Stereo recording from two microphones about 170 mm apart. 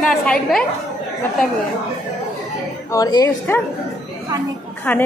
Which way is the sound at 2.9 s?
20° left (ahead or behind).